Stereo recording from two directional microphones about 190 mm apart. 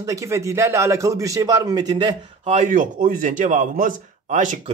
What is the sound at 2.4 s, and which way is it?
A man's voice, 40° right (ahead or behind).